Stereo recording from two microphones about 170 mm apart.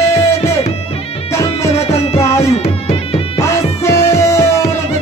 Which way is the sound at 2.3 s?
40° left (ahead or behind).